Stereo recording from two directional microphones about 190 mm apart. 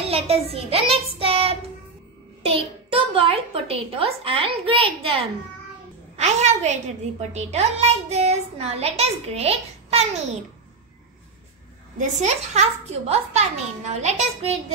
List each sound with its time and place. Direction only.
0.0 s child singing: 30° right (ahead or behind)
2.4 s a child's voice: 30° right (ahead or behind)
12.2 s a child's voice: 35° right (ahead or behind)